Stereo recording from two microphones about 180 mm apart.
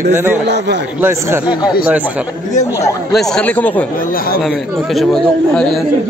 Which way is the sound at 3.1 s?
Centre (ahead or behind).